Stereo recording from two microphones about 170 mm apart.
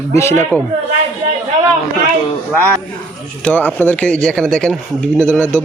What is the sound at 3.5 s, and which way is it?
A man's voice, 10° left (ahead or behind).